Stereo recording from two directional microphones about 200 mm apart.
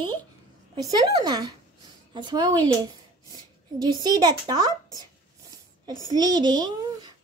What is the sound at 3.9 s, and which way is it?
Speech, 20° right (ahead or behind).